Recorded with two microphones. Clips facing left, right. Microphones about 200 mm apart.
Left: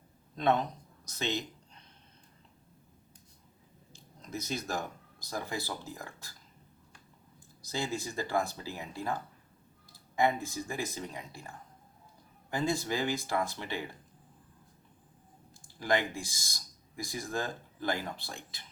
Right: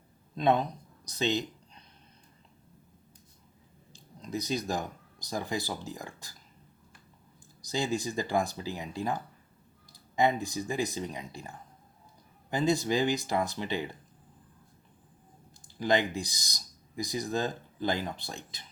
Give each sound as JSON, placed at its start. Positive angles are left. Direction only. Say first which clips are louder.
{"t": 0.3, "sound": "a man's voice", "louder": "right 2 dB", "side_deg": -15}
{"t": 4.3, "sound": "speech", "louder": "right 4 dB", "side_deg": -15}
{"t": 7.6, "sound": "speech", "louder": "right 4 dB", "side_deg": -15}
{"t": 10.2, "sound": "speech", "louder": "right 2 dB", "side_deg": -20}
{"t": 15.6, "sound": "speech", "louder": "right 3 dB", "side_deg": -20}